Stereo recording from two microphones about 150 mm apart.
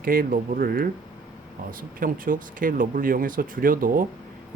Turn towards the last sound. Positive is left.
turn(degrees=-65)  # may be behind; listen again after turning